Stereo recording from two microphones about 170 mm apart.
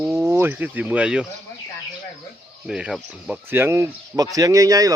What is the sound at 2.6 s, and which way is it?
Speech, 5° right (ahead or behind).